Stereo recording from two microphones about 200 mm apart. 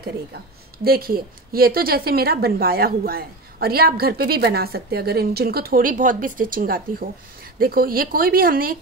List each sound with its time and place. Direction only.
0.8 s a woman's voice: 50° right (ahead or behind)